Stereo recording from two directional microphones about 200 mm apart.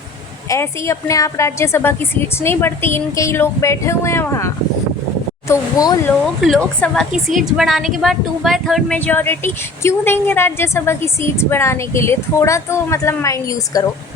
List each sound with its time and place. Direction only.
0.4 s a woman's voice: 15° left (ahead or behind)
6.4 s a woman's voice: 5° left (ahead or behind)